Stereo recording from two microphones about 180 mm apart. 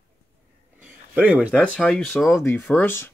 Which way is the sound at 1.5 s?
5° left (ahead or behind).